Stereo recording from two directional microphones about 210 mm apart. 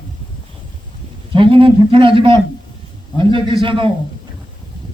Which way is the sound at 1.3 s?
25° right (ahead or behind).